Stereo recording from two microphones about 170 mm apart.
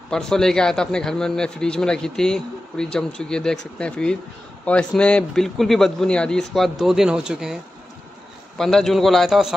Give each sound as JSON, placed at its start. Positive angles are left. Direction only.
{"t": 0.1, "sound": "a man's voice", "side_deg": 5}
{"t": 8.5, "sound": "a man's voice", "side_deg": 5}